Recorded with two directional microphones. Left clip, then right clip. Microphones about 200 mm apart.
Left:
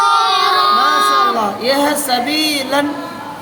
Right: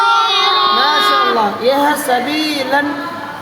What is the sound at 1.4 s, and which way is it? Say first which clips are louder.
Speech: right 2 dB; 15° right (ahead or behind).